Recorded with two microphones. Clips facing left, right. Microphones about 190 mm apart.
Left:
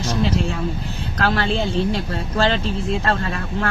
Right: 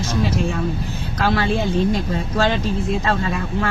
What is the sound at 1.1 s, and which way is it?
Speech, 10° right (ahead or behind).